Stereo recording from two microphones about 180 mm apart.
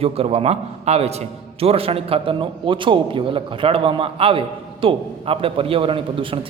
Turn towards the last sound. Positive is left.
turn(degrees=-30)  # may be behind; listen again after turning